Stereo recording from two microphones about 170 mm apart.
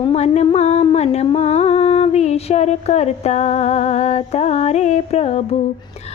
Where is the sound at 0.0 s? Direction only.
40° left (ahead or behind).